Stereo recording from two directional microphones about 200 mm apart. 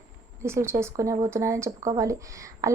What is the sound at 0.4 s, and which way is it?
A woman's voice, 15° right (ahead or behind).